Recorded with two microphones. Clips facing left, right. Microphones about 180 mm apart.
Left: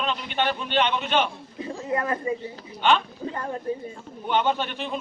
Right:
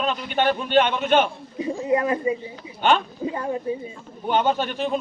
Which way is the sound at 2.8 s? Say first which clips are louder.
Right 2 dB; 45° right (ahead or behind).